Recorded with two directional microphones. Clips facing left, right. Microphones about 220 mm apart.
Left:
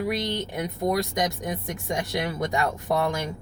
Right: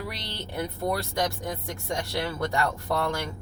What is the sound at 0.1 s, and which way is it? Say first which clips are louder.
Speech: left 9 dB; 15° left (ahead or behind).